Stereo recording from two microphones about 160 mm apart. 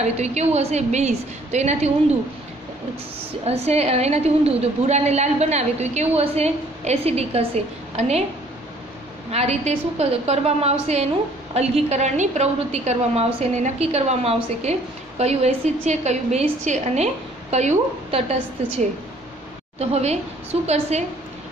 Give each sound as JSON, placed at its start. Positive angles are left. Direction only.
{"t": 0.0, "sound": "a woman's voice", "side_deg": -45}
{"t": 3.4, "sound": "a woman's voice", "side_deg": -40}
{"t": 9.3, "sound": "a woman's voice", "side_deg": -40}
{"t": 19.8, "sound": "a woman's voice", "side_deg": -40}